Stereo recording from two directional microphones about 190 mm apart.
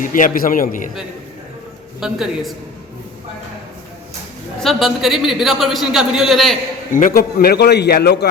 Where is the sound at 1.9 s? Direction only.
Centre (ahead or behind).